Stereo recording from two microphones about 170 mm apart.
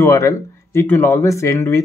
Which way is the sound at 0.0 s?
15° left (ahead or behind).